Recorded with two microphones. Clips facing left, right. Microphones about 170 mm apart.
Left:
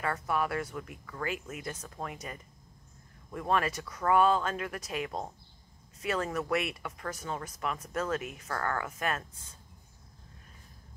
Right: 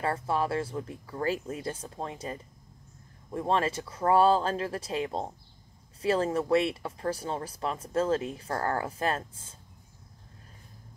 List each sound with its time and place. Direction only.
0.0 s speech: 30° right (ahead or behind)